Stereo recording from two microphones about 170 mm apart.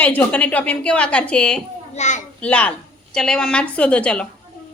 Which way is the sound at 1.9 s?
45° left (ahead or behind).